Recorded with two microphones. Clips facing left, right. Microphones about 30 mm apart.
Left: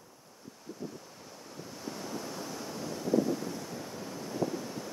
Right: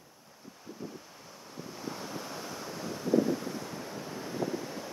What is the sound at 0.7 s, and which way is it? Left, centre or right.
Waves, centre.